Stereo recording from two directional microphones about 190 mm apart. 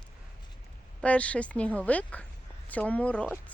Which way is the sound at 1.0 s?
5° left (ahead or behind).